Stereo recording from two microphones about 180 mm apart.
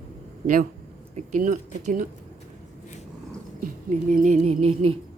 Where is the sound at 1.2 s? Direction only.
45° right (ahead or behind).